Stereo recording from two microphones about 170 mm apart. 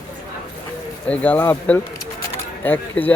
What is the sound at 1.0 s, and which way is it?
Speech, 10° left (ahead or behind).